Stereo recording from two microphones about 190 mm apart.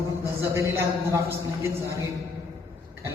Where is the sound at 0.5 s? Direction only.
15° right (ahead or behind).